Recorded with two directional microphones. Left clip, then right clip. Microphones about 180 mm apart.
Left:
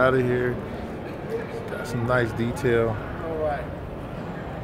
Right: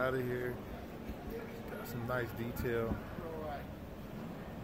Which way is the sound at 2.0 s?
10° left (ahead or behind).